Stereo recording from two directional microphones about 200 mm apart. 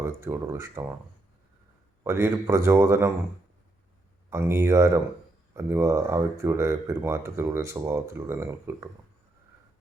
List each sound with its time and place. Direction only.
0.0 s speech: 15° right (ahead or behind)
2.0 s speech: 15° right (ahead or behind)
4.3 s speech: 15° right (ahead or behind)